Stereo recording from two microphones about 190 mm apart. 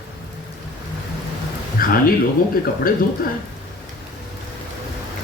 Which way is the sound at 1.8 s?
50° left (ahead or behind).